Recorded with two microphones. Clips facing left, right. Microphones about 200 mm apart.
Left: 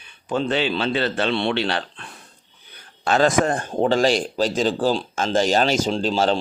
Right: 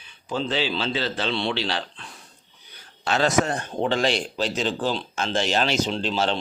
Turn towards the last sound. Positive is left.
turn(degrees=40)  # may be behind; listen again after turning